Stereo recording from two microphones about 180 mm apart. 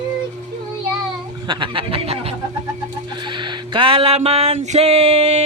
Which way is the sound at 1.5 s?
25° right (ahead or behind).